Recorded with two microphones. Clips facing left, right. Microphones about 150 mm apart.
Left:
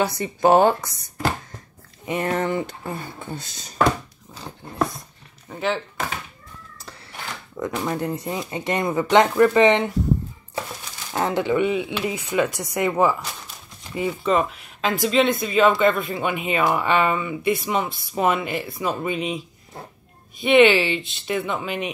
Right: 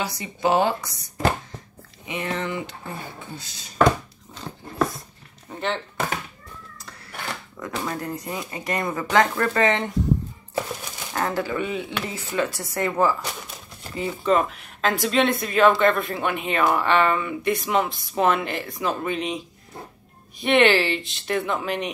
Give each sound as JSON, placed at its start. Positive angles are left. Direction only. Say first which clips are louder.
{"t": 0.0, "sound": "speech", "louder": "left 5 dB", "side_deg": 50}
{"t": 2.0, "sound": "speech", "louder": "left 5 dB", "side_deg": 45}
{"t": 5.5, "sound": "speech", "louder": "left 3 dB", "side_deg": 5}
{"t": 7.5, "sound": "speech", "louder": "left 5 dB", "side_deg": 20}
{"t": 11.1, "sound": "speech", "louder": "left 4 dB", "side_deg": 20}
{"t": 13.9, "sound": "speech", "louder": "even", "side_deg": 5}